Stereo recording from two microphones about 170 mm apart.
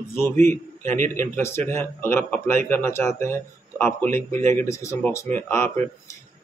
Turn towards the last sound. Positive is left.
turn(degrees=15)  # may be behind; listen again after turning